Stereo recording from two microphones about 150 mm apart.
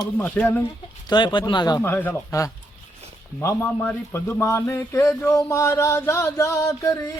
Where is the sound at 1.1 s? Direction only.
30° left (ahead or behind).